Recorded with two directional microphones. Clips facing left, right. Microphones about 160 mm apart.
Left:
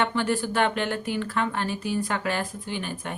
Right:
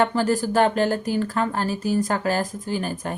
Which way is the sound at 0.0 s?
40° right (ahead or behind).